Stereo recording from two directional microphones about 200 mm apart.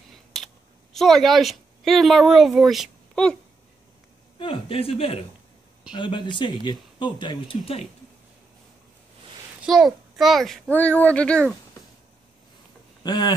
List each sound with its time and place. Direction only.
0.1 s a sound: centre (ahead or behind)
0.9 s speech: centre (ahead or behind)
4.4 s speech: 25° left (ahead or behind)
9.6 s a child's voice: centre (ahead or behind)
13.0 s speech: 20° left (ahead or behind)